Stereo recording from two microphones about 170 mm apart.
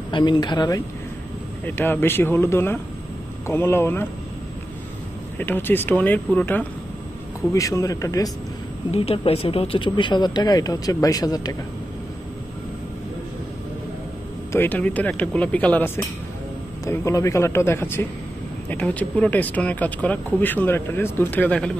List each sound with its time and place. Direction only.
0.1 s speech: 25° left (ahead or behind)
1.7 s speech: 10° left (ahead or behind)
5.4 s speech: 10° left (ahead or behind)
8.9 s speech: 35° left (ahead or behind)
14.5 s speech: 10° left (ahead or behind)